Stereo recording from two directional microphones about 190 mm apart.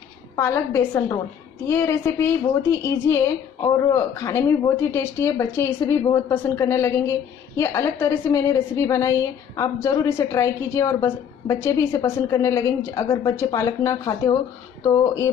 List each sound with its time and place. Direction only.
0.4 s a woman's voice: 15° left (ahead or behind)